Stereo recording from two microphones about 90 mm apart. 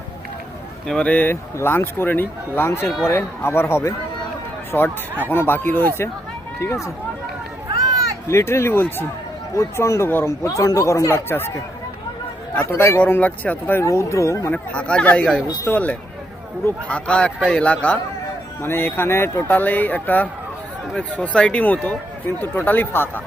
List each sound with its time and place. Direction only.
0.9 s speech: 10° left (ahead or behind)
1.3 s speech: 25° left (ahead or behind)
6.6 s speech: 30° left (ahead or behind)
7.9 s a sound: 40° right (ahead or behind)
8.3 s speech: 30° left (ahead or behind)
9.6 s speech: 35° left (ahead or behind)
12.5 s speech: 25° left (ahead or behind)
13.8 s speech: 35° left (ahead or behind)
14.5 s speech: 15° left (ahead or behind)
18.6 s speech: 25° left (ahead or behind)